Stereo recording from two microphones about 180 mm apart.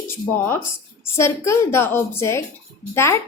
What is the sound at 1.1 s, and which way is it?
A woman's voice, 15° left (ahead or behind).